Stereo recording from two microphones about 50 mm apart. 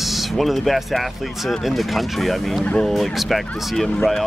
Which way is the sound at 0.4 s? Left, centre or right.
Centre.